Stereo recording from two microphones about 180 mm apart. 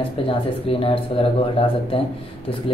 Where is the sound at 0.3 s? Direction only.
30° left (ahead or behind).